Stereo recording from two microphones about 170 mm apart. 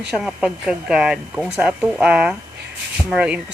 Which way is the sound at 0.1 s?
Centre (ahead or behind).